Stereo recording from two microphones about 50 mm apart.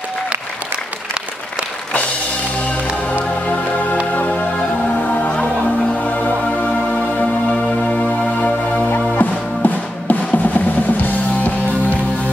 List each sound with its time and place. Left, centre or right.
3.1 s music: left
8.4 s music: left